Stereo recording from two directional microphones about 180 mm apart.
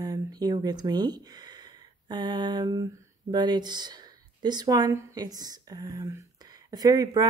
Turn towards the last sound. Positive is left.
turn(degrees=-20)  # may be behind; listen again after turning